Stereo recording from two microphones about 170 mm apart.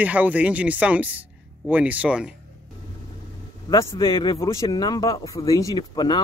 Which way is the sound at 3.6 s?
20° left (ahead or behind).